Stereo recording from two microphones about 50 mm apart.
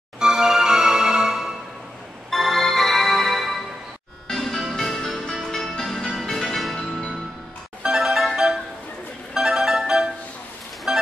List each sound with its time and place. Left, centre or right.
0.2 s music: centre
2.3 s music: centre
7.8 s music: centre
9.3 s music: centre